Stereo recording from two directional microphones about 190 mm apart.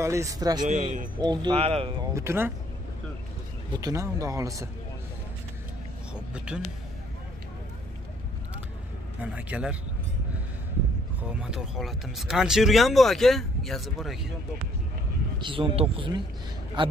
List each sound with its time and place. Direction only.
0.0 s speech: 15° right (ahead or behind); by 2.0 s 30° right (ahead or behind)
2.1 s speech: 10° right (ahead or behind)
3.7 s speech: 15° right (ahead or behind)
6.3 s speech: 5° right (ahead or behind)
9.2 s speech: 5° right (ahead or behind)
11.4 s speech: 5° right (ahead or behind)
15.3 s speech: 25° right (ahead or behind)